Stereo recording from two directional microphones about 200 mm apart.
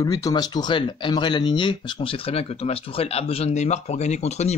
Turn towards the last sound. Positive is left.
turn(degrees=35)  # may be behind; listen again after turning